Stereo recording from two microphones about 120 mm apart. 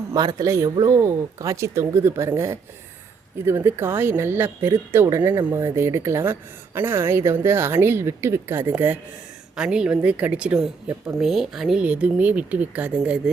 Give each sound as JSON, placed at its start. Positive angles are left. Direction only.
{"t": 0.1, "sound": "speech", "side_deg": -35}